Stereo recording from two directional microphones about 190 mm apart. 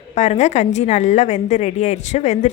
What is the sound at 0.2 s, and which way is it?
Speech, 35° left (ahead or behind).